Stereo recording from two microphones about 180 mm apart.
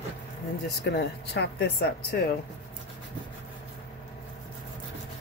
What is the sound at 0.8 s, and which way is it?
Speech, 70° left (ahead or behind).